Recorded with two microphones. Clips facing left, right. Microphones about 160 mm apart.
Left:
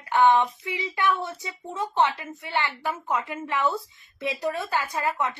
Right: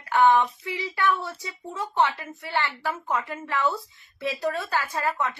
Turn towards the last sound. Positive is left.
turn(degrees=20)  # may be behind; listen again after turning